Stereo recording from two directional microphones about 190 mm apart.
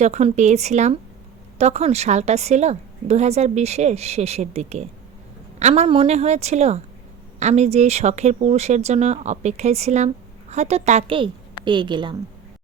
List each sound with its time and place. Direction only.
0.0 s a woman's voice: 35° right (ahead or behind)